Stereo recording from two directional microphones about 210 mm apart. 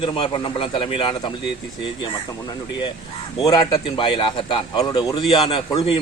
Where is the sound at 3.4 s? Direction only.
20° left (ahead or behind).